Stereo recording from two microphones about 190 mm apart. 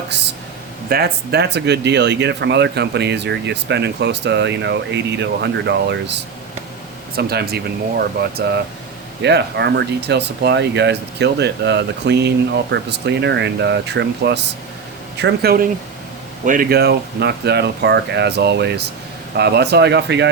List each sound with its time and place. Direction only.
0.9 s speech: 55° right (ahead or behind)
7.2 s speech: 55° right (ahead or behind)